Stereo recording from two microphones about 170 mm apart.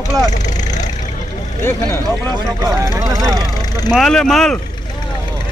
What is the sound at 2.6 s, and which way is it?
Speech, 20° right (ahead or behind).